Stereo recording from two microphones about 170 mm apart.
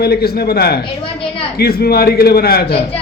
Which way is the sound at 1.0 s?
35° left (ahead or behind).